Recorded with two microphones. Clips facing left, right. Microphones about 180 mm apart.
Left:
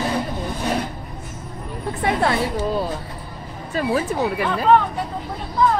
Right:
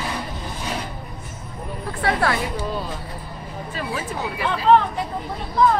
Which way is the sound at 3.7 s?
45° left (ahead or behind).